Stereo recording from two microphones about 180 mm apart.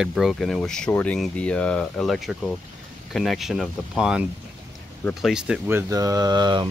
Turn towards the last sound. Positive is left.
turn(degrees=-25)  # may be behind; listen again after turning